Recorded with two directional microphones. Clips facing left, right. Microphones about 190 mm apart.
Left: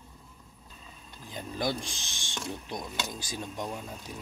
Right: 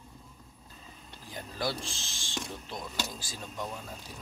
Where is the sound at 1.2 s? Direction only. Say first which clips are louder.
Left 3 dB; 20° left (ahead or behind).